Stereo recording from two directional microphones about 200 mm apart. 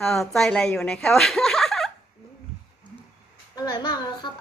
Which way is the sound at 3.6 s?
20° left (ahead or behind).